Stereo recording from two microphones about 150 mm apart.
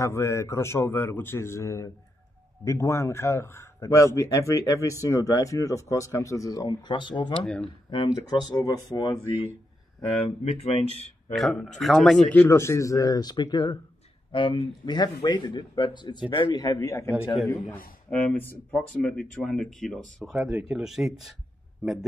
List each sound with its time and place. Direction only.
0.0 s a man's voice: 20° left (ahead or behind)
7.3 s a man's voice: 5° left (ahead or behind)
7.9 s speech: 30° left (ahead or behind)
10.0 s speech: 40° left (ahead or behind)
11.3 s speech: centre (ahead or behind)
12.3 s speech: 15° left (ahead or behind)
18.1 s a man's voice: 10° left (ahead or behind)